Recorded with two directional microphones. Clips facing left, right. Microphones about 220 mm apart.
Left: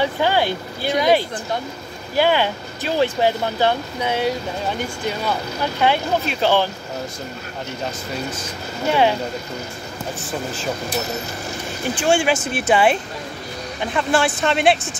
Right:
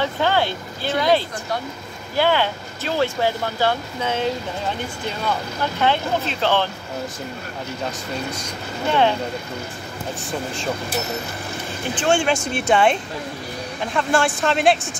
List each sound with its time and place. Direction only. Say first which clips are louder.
0.0 s speech: left 1 dB; 15° left (ahead or behind)
5.6 s speech: left 2 dB; 10° left (ahead or behind)
11.9 s speech: left 1 dB; 10° left (ahead or behind)